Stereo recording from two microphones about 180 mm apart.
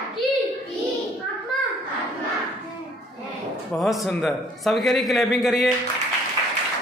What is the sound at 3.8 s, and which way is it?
A man's voice, centre (ahead or behind).